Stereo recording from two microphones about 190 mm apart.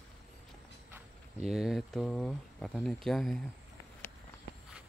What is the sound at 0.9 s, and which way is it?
Speech, centre (ahead or behind).